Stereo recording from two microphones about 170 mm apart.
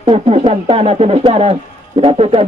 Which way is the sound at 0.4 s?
35° right (ahead or behind).